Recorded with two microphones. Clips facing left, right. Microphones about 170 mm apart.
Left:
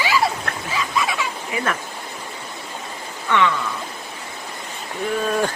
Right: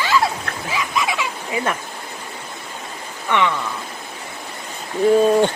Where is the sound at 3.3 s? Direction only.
20° right (ahead or behind).